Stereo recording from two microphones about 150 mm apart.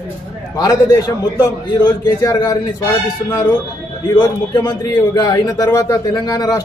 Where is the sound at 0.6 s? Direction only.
25° left (ahead or behind).